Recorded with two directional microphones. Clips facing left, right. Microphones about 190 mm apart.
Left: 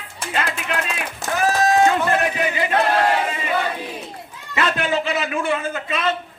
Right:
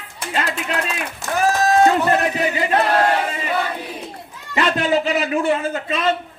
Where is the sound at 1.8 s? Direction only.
35° right (ahead or behind).